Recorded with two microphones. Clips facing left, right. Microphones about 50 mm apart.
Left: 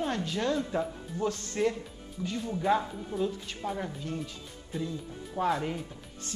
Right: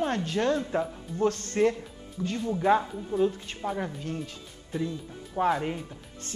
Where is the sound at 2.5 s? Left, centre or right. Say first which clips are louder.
Right 4 dB; centre.